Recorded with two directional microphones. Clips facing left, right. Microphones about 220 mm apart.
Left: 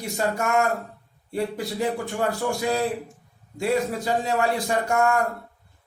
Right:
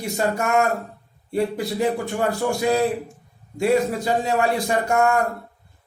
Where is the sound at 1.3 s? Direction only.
20° right (ahead or behind).